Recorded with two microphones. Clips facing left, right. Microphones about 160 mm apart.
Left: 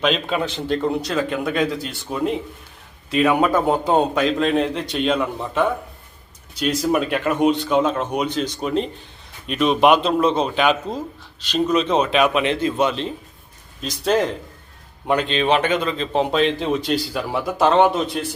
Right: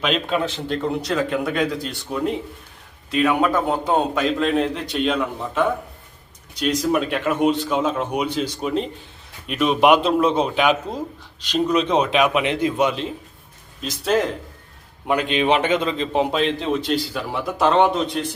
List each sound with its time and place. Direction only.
0.0 s speech: centre (ahead or behind)
6.5 s a man's voice: 5° left (ahead or behind); by 16.2 s 20° right (ahead or behind)
16.3 s speech: centre (ahead or behind)